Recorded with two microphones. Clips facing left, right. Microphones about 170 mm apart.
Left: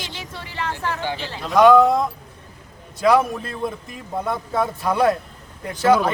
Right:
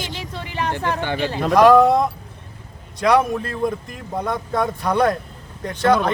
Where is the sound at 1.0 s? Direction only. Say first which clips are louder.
Right 6 dB; 60° right (ahead or behind).